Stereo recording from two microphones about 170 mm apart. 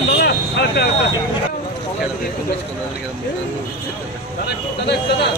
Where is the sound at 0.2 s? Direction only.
75° left (ahead or behind).